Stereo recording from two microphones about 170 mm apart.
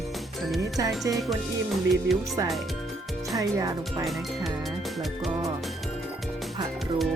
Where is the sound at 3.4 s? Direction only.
20° right (ahead or behind).